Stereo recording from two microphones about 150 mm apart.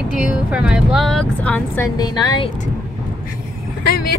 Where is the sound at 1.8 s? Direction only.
25° left (ahead or behind).